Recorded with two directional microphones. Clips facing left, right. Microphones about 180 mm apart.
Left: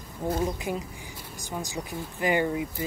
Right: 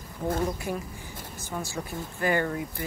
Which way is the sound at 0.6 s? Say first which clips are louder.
Left 1 dB; 15° left (ahead or behind).